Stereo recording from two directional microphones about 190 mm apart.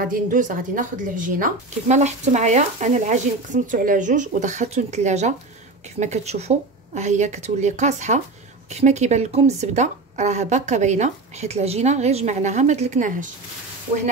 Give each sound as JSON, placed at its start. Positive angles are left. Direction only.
{"t": 0.0, "sound": "a woman's voice", "side_deg": -45}